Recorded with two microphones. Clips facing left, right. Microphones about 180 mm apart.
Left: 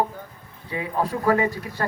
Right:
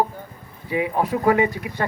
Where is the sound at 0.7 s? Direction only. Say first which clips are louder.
Right 4 dB; 5° right (ahead or behind).